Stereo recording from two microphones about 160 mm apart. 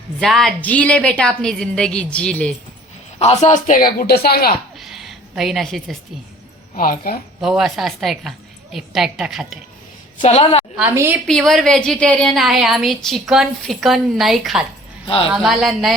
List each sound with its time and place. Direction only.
0.2 s a woman's voice: centre (ahead or behind)
3.2 s speech: 45° left (ahead or behind); by 4.5 s 75° left (ahead or behind)
4.8 s a sound: centre (ahead or behind)
6.7 s speech: 60° left (ahead or behind)
7.4 s a woman's voice: centre (ahead or behind)
10.2 s a woman's voice: 40° left (ahead or behind)
10.9 s a woman's voice: 15° right (ahead or behind)
11.3 s a woman's voice: centre (ahead or behind)
15.0 s speech: 35° left (ahead or behind)
15.3 s a woman's voice: centre (ahead or behind)